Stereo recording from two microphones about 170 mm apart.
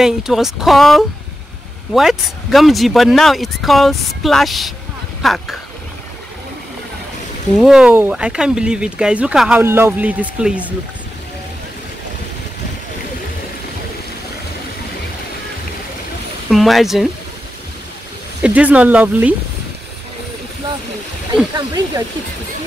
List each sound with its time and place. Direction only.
0.0 s speech: centre (ahead or behind)
7.5 s speech: centre (ahead or behind)
16.4 s speech: centre (ahead or behind)
18.4 s speech: 10° right (ahead or behind)
21.5 s speech: 25° right (ahead or behind)